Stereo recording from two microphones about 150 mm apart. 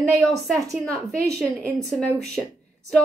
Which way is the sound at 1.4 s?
5° left (ahead or behind).